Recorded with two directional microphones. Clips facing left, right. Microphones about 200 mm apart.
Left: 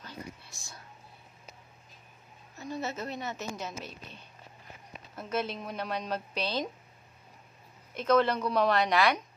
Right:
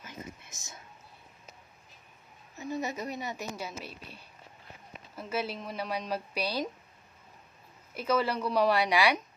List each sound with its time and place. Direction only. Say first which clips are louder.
0.5 s a sound: even; 20° right (ahead or behind)
2.5 s a woman's voice: right 2 dB; 15° right (ahead or behind)
7.9 s a woman's voice: left 3 dB; 5° right (ahead or behind)